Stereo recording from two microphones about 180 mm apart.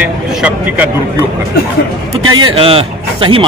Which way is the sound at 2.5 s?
30° right (ahead or behind).